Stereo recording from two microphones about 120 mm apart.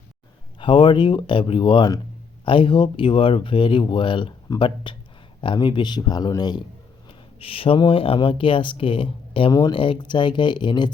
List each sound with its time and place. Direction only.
0.6 s speech: 45° left (ahead or behind)
7.3 s speech: 50° left (ahead or behind)
9.5 s speech: 30° left (ahead or behind)
9.7 s speech: 45° left (ahead or behind)